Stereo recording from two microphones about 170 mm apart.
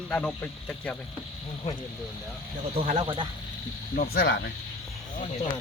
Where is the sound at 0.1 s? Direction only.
10° left (ahead or behind).